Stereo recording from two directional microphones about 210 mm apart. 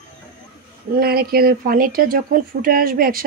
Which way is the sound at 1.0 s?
45° right (ahead or behind).